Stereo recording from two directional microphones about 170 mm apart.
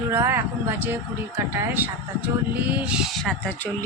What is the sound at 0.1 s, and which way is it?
Speech, 15° right (ahead or behind).